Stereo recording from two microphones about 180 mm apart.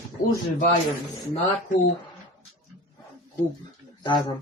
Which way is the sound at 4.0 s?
25° left (ahead or behind).